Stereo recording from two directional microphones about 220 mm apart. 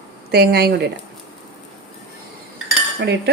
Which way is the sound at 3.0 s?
50° right (ahead or behind).